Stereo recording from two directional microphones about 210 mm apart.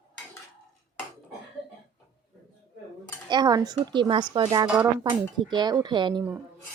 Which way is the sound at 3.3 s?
20° right (ahead or behind).